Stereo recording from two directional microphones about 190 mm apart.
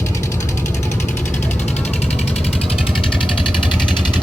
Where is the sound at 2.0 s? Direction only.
35° left (ahead or behind).